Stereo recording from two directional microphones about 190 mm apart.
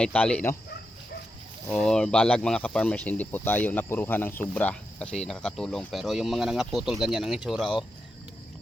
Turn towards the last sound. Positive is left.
turn(degrees=0)  # may be behind; listen again after turning